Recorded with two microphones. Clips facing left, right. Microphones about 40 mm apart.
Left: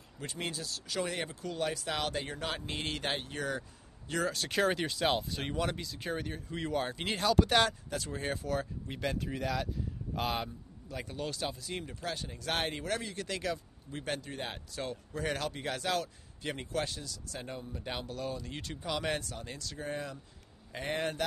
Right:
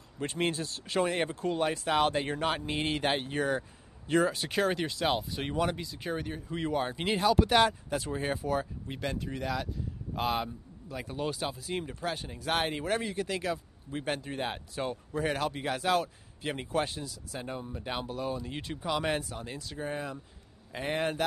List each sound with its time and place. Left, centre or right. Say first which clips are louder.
0.2 s speech: right 7 dB; right
2.5 s speech: right 6 dB; centre
4.5 s speech: right 1 dB; centre